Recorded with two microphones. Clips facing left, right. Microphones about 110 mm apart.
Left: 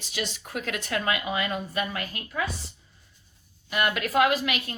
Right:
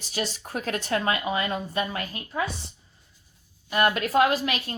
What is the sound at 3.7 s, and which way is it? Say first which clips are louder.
A woman's voice: right 4 dB; 30° right (ahead or behind).